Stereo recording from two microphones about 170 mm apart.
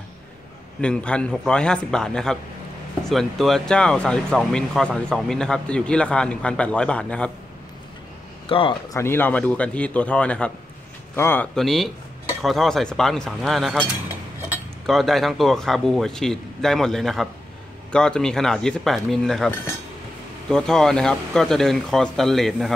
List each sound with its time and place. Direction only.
0.7 s speech: 5° left (ahead or behind)
8.5 s speech: 30° left (ahead or behind)
8.9 s a man's voice: 15° left (ahead or behind)
11.5 s speech: centre (ahead or behind)
14.9 s speech: centre (ahead or behind)